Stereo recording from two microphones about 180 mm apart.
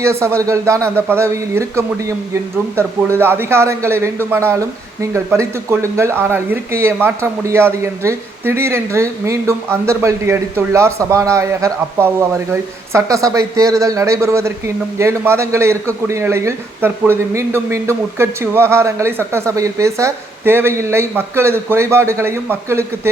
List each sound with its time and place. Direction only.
0.0 s speech: 15° right (ahead or behind)